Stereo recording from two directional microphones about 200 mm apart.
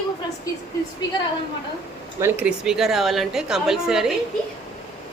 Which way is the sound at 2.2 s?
5° right (ahead or behind).